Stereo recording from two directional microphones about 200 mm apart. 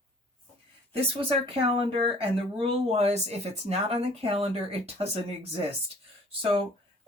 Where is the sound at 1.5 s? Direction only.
30° right (ahead or behind).